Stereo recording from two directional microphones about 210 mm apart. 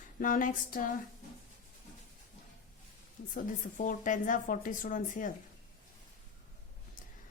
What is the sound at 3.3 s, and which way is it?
A woman's voice, 40° left (ahead or behind).